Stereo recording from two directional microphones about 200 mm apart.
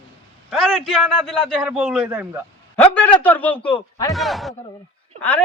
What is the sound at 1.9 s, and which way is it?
Speech, 10° right (ahead or behind).